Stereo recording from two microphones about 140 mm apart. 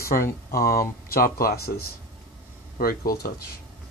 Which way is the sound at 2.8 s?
90° left.